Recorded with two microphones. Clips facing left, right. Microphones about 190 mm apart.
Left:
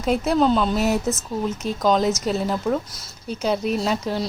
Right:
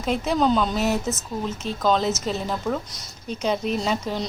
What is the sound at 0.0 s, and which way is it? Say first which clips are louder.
A woman's voice: left 3 dB; 5° left (ahead or behind).